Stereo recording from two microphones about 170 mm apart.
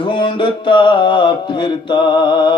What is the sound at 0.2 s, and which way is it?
Mantra, 30° left (ahead or behind).